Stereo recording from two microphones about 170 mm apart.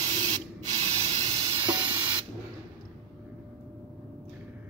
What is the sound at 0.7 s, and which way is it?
Spray, 35° right (ahead or behind).